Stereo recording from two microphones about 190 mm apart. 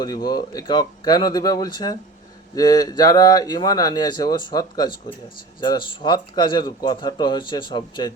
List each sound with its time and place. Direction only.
0.0 s speech: 20° left (ahead or behind)